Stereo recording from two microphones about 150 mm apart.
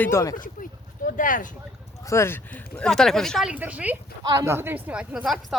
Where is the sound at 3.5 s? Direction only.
10° right (ahead or behind).